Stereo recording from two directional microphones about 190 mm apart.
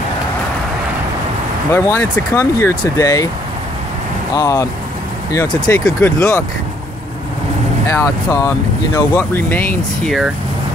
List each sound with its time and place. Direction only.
1.7 s speech: 10° left (ahead or behind)
4.4 s speech: 15° left (ahead or behind)
7.8 s speech: 15° left (ahead or behind)
10.0 s speech: centre (ahead or behind)